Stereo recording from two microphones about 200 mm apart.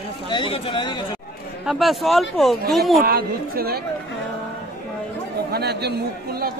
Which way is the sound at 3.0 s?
45° right (ahead or behind).